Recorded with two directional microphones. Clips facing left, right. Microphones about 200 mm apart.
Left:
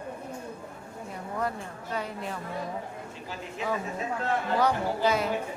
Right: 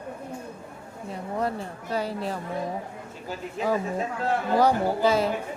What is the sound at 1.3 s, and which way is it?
Speech, 30° right (ahead or behind).